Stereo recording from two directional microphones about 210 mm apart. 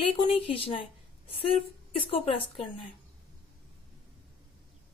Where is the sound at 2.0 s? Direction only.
25° left (ahead or behind).